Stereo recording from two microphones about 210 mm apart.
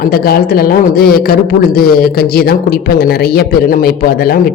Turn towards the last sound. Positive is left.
turn(degrees=45)  # may be behind; listen again after turning